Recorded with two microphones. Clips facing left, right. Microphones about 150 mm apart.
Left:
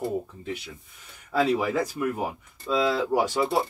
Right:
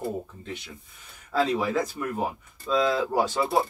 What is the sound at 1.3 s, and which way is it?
Speech, 10° left (ahead or behind).